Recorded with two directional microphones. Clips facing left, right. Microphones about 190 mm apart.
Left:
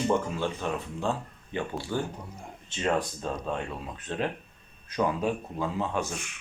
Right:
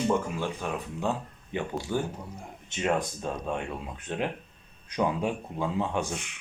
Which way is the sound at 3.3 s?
15° right (ahead or behind).